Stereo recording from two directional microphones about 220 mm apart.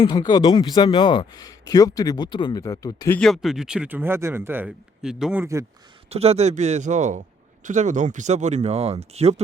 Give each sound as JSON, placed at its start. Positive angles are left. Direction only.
{"t": 0.0, "sound": "speech", "side_deg": 20}
{"t": 3.2, "sound": "speech", "side_deg": 0}
{"t": 6.1, "sound": "speech", "side_deg": -30}